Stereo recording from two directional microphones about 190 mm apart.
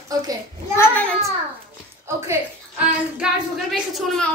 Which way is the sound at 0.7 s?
10° left (ahead or behind).